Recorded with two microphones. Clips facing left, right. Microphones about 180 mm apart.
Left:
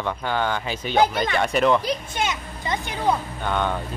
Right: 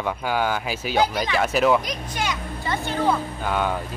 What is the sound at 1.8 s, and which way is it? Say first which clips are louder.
Speech: left 3 dB; 25° left (ahead or behind).